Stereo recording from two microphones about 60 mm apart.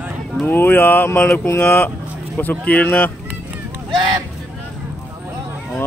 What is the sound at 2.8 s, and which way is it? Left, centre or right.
Mantra, left.